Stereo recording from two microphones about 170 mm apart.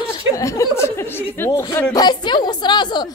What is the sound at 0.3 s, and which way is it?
Speech, 20° left (ahead or behind).